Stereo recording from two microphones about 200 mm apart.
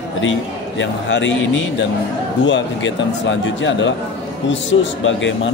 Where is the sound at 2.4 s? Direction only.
65° left (ahead or behind).